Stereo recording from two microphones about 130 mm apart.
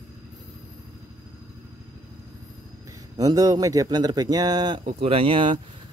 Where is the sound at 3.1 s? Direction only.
30° right (ahead or behind).